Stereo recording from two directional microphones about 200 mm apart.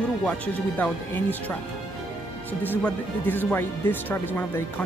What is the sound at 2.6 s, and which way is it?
Speech, 10° left (ahead or behind).